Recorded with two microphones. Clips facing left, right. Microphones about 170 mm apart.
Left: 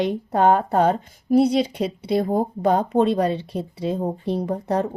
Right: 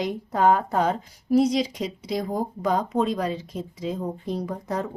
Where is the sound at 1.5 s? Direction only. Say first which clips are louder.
Left 4 dB; 60° left (ahead or behind).